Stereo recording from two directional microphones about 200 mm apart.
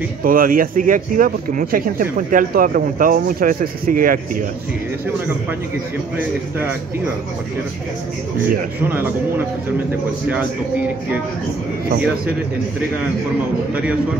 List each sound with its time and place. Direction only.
0.2 s speech: 45° right (ahead or behind)